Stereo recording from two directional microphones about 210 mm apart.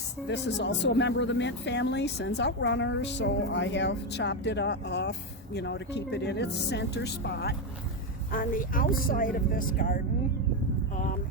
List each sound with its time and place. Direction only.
0.3 s speech: 55° left (ahead or behind)
8.3 s speech: 40° left (ahead or behind)